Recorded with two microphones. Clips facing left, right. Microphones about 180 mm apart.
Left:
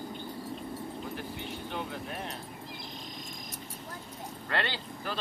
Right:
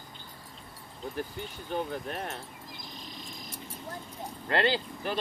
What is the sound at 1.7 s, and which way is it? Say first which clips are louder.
Speech: right 7 dB; 45° right (ahead or behind).